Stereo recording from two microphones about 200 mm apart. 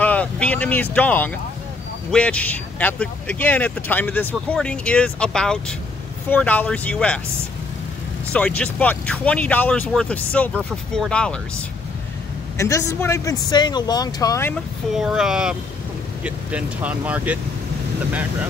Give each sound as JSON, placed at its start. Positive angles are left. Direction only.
{"t": 0.0, "sound": "a sound", "side_deg": 5}
{"t": 0.9, "sound": "speech", "side_deg": 10}
{"t": 8.3, "sound": "speech", "side_deg": 5}
{"t": 12.5, "sound": "speech", "side_deg": 15}
{"t": 15.0, "sound": "speech", "side_deg": -5}